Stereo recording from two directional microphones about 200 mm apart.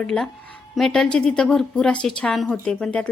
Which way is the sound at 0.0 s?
5° left (ahead or behind).